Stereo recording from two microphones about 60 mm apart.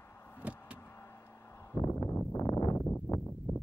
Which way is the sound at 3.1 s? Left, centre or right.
Left.